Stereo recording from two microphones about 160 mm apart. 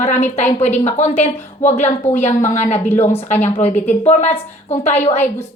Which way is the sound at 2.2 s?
50° left (ahead or behind).